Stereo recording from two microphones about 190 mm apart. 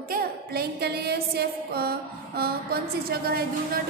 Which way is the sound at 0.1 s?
55° right (ahead or behind).